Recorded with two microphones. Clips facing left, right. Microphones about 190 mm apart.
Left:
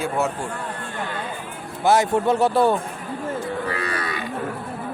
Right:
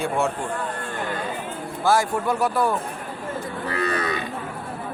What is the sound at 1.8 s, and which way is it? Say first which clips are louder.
Speech: left 3 dB; 20° left (ahead or behind).